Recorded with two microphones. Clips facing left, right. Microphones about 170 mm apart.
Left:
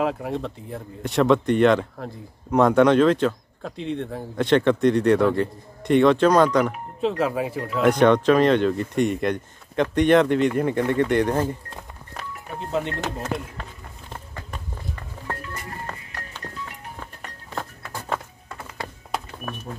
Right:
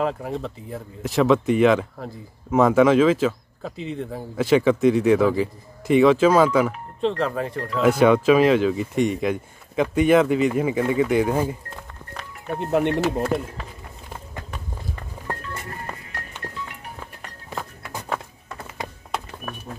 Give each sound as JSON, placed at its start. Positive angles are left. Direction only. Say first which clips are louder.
{"t": 0.0, "sound": "speech", "louder": "even", "side_deg": 0}
{"t": 12.5, "sound": "speech", "louder": "right 6 dB", "side_deg": -60}
{"t": 15.9, "sound": "music", "louder": "right 1 dB", "side_deg": -10}